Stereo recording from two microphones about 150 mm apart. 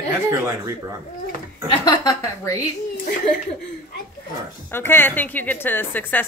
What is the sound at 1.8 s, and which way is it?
Speech, 25° left (ahead or behind).